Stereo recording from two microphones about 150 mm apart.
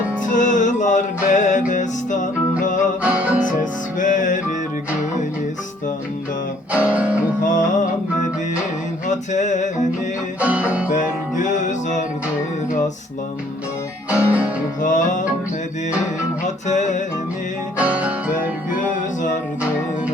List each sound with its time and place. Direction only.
0.2 s music: 60° left (ahead or behind)
3.0 s music: 10° right (ahead or behind)
3.6 s music: 60° left (ahead or behind)
6.7 s music: 10° right (ahead or behind)
7.4 s music: 60° left (ahead or behind)
9.0 s music: 55° left (ahead or behind)
10.4 s music: 10° right (ahead or behind)
10.9 s music: 60° left (ahead or behind)
14.1 s music: 10° right (ahead or behind)
14.8 s music: 60° left (ahead or behind)
16.6 s music: 55° left (ahead or behind)
17.7 s music: 10° right (ahead or behind)
18.7 s music: 60° left (ahead or behind)